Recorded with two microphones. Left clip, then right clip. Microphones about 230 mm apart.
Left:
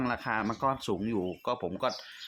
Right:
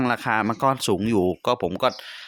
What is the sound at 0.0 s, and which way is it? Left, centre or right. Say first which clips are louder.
Speech: right 9 dB; right.